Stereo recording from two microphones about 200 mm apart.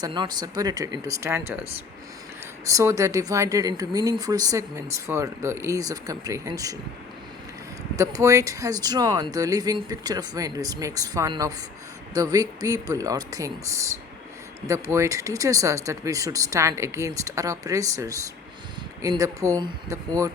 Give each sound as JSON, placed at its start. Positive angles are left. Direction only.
{"t": 0.0, "sound": "speech", "side_deg": -20}
{"t": 2.6, "sound": "speech", "side_deg": -15}
{"t": 7.9, "sound": "speech", "side_deg": -15}